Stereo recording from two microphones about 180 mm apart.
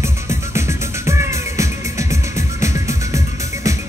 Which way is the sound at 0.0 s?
15° right (ahead or behind).